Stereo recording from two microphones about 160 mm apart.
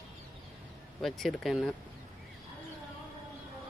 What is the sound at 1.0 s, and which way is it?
Speech, centre (ahead or behind).